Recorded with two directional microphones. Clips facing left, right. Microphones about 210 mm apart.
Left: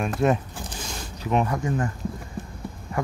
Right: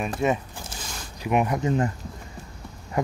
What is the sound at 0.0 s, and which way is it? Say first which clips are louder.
Speech: left 2 dB; centre (ahead or behind).